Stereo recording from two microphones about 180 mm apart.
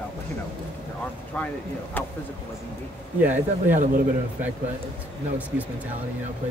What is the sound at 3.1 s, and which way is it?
Speech, 10° right (ahead or behind).